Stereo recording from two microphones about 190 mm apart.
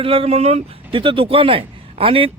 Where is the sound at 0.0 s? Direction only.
30° right (ahead or behind).